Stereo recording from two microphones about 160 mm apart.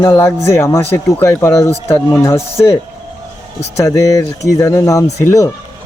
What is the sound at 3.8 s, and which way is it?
Speech, 20° left (ahead or behind).